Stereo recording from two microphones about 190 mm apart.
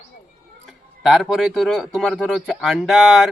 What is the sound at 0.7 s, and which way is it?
Speech, centre (ahead or behind).